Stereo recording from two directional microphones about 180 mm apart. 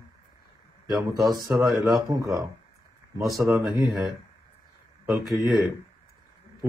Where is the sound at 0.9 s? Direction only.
20° right (ahead or behind).